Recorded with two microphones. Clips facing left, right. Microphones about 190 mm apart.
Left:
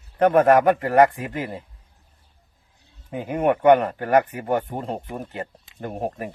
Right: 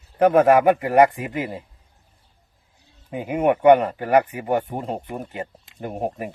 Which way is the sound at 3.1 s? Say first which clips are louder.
Right 1 dB; 10° right (ahead or behind).